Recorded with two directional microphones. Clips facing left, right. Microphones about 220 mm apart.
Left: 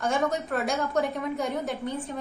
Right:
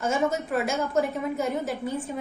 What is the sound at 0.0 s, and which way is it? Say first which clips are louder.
A woman's voice: right 1 dB; centre (ahead or behind).